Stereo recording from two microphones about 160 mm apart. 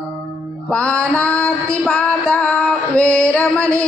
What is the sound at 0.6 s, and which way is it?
Music, 5° left (ahead or behind).